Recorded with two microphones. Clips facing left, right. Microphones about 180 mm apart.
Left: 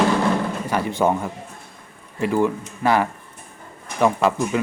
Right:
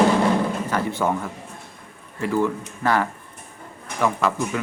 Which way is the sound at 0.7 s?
20° left (ahead or behind).